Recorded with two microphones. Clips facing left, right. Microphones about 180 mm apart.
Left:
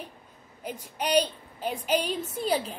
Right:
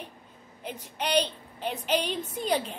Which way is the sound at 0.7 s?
10° left (ahead or behind).